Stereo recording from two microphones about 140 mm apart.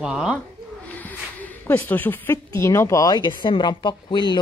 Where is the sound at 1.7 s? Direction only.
15° left (ahead or behind).